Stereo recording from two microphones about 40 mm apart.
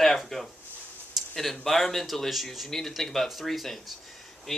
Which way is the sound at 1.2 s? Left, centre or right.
Centre.